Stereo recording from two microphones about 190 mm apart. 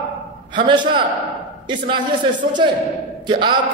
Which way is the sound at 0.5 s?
25° right (ahead or behind).